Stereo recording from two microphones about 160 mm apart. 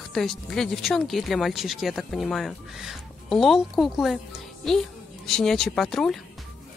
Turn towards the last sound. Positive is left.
turn(degrees=0)  # may be behind; listen again after turning